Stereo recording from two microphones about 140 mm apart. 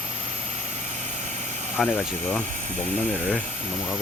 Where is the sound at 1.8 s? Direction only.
Centre (ahead or behind).